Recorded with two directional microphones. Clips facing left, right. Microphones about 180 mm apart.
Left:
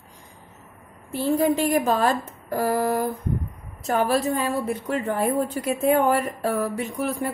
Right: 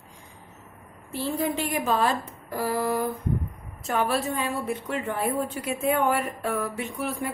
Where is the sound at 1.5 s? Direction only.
40° left (ahead or behind).